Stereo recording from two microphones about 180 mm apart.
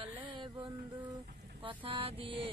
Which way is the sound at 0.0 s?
30° right (ahead or behind).